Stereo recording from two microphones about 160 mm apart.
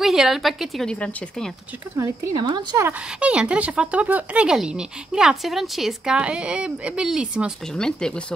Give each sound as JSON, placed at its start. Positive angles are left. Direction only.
{"t": 0.0, "sound": "a woman's voice", "side_deg": 0}
{"t": 2.0, "sound": "speech", "side_deg": -25}
{"t": 2.8, "sound": "a woman's voice", "side_deg": -10}